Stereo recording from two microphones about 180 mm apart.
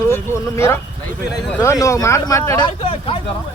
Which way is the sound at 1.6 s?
15° left (ahead or behind).